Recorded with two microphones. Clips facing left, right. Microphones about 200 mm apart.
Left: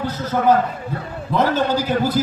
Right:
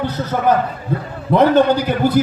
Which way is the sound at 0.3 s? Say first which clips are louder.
Left 1 dB; 60° right (ahead or behind).